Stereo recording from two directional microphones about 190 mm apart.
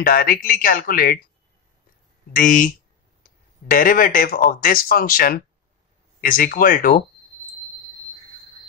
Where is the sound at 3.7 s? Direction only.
50° left (ahead or behind).